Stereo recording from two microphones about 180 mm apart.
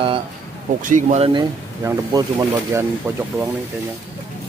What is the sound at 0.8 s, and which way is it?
Speech, 45° right (ahead or behind).